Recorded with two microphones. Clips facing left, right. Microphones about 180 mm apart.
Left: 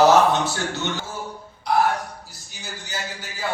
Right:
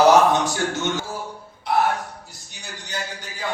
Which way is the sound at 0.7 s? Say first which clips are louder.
Right 3 dB; 45° right (ahead or behind).